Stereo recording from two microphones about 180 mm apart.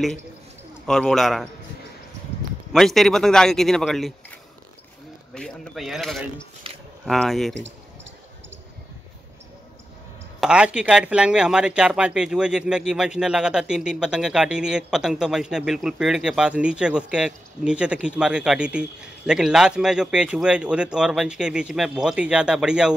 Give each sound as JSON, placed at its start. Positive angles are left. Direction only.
{"t": 0.8, "sound": "speech", "side_deg": 5}
{"t": 2.7, "sound": "speech", "side_deg": 0}
{"t": 5.3, "sound": "speech", "side_deg": 5}
{"t": 6.7, "sound": "a sound", "side_deg": -30}
{"t": 7.1, "sound": "speech", "side_deg": 0}
{"t": 10.4, "sound": "speech", "side_deg": -5}